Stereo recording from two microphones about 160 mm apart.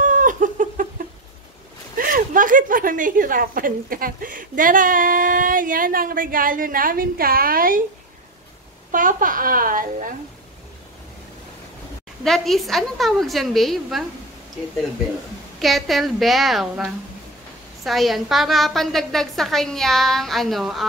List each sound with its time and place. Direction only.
0.0 s chicken: 55° right (ahead or behind)
2.0 s a woman's voice: 60° right (ahead or behind)
8.9 s a woman's voice: 60° right (ahead or behind)
12.3 s a woman's voice: centre (ahead or behind)
15.6 s a woman's voice: centre (ahead or behind)